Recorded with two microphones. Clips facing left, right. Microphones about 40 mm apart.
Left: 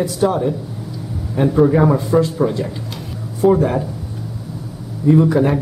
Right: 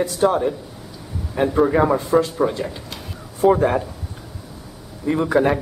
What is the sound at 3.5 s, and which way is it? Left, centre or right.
Speech, centre.